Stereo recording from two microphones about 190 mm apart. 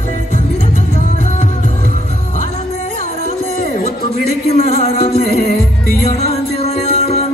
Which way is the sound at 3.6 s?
40° left (ahead or behind).